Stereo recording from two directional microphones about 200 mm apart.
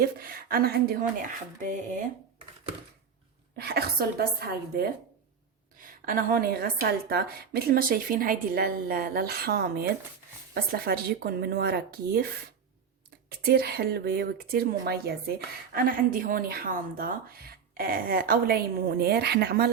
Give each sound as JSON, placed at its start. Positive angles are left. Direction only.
{"t": 0.0, "sound": "a woman's voice", "side_deg": -50}
{"t": 3.6, "sound": "a woman's voice", "side_deg": -50}
{"t": 13.4, "sound": "a woman's voice", "side_deg": -50}